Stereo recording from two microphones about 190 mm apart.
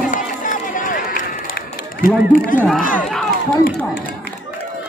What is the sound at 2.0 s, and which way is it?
Speech, 45° left (ahead or behind).